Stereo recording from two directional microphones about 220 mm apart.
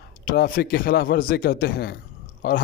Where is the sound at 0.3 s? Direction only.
40° left (ahead or behind).